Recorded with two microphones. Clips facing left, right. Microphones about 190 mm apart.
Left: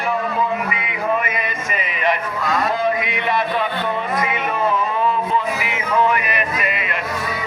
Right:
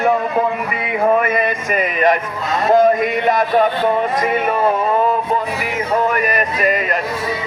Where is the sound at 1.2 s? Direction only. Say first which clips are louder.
Right 7 dB; 50° right (ahead or behind).